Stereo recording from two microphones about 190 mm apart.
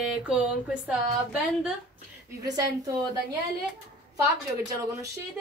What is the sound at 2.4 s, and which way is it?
Speech, 20° right (ahead or behind).